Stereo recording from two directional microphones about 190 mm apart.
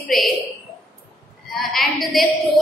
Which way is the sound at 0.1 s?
Centre (ahead or behind).